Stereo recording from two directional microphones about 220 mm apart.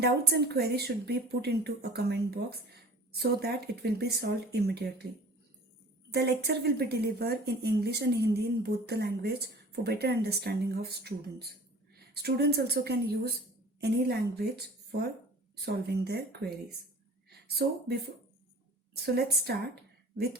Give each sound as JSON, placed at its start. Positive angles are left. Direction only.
{"t": 0.0, "sound": "speech", "side_deg": -45}
{"t": 6.1, "sound": "speech", "side_deg": -50}
{"t": 17.2, "sound": "a sound", "side_deg": -45}
{"t": 19.0, "sound": "speech", "side_deg": -45}